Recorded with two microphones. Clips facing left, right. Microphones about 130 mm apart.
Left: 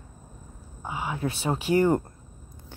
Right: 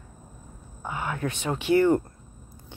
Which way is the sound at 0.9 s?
15° left (ahead or behind).